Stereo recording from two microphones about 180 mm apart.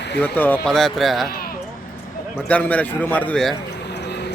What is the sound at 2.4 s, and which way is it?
A man's voice, 10° left (ahead or behind).